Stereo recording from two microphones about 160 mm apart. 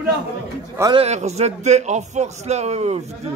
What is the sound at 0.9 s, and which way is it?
A man's voice, 40° right (ahead or behind).